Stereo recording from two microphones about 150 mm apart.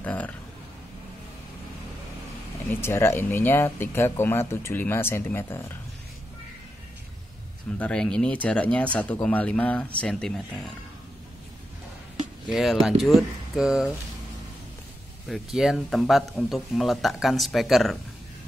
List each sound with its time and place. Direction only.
0.0 s a sound: 10° left (ahead or behind)
2.7 s speech: 15° left (ahead or behind)
7.8 s speech: 5° left (ahead or behind)
12.4 s speech: centre (ahead or behind)
15.2 s speech: centre (ahead or behind)